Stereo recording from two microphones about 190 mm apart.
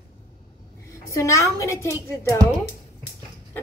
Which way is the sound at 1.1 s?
15° left (ahead or behind).